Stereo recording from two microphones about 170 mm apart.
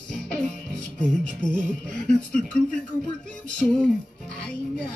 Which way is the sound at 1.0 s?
5° left (ahead or behind).